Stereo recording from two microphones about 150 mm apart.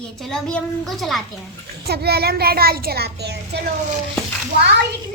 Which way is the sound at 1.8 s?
90° right.